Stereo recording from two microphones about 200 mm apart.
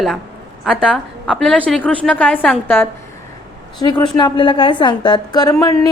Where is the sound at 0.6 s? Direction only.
5° left (ahead or behind).